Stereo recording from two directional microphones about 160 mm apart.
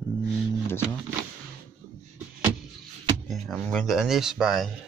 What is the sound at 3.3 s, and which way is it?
Speech, centre (ahead or behind).